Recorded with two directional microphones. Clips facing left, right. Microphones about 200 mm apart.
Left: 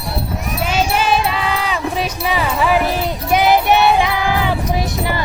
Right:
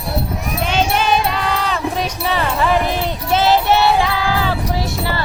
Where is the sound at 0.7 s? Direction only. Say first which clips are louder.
Even; 5° left (ahead or behind).